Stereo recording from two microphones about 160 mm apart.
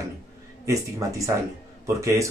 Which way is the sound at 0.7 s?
20° right (ahead or behind).